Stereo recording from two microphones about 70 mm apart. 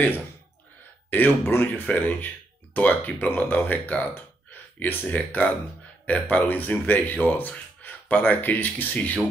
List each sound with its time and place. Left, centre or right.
1.1 s speech: left